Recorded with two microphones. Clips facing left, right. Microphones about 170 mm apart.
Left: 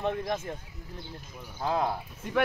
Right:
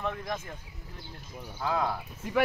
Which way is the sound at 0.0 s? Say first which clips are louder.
Left 4 dB; 30° left (ahead or behind).